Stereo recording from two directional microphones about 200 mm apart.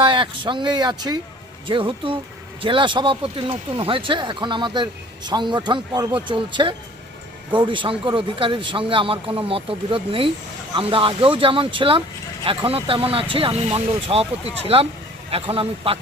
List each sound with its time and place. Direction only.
0.0 s speech: 25° right (ahead or behind)